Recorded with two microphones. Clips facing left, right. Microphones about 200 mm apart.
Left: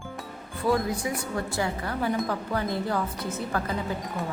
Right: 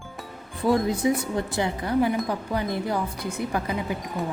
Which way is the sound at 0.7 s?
25° right (ahead or behind).